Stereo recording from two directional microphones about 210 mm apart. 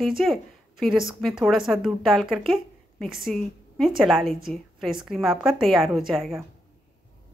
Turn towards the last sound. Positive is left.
turn(degrees=0)  # may be behind; listen again after turning